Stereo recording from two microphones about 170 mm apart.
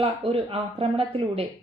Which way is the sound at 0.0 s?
35° right (ahead or behind).